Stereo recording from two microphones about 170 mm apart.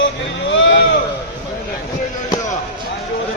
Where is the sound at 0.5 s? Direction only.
90° left.